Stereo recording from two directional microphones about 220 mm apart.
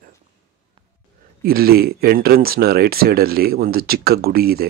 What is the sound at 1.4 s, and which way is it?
Speech, 45° right (ahead or behind).